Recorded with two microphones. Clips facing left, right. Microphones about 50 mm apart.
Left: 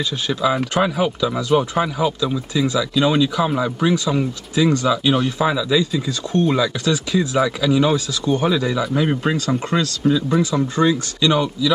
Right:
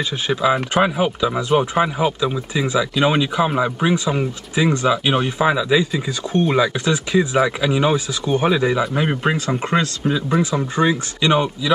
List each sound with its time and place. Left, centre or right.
0.0 s speech: right